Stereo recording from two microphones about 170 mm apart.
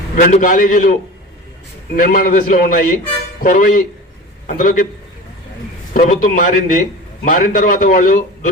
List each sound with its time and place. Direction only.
0.2 s a man's voice: 50° left (ahead or behind)
2.0 s a man's voice: 55° left (ahead or behind)
5.9 s a man's voice: 50° left (ahead or behind)